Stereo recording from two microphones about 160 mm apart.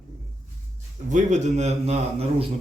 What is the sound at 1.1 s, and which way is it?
A man's voice, 50° right (ahead or behind).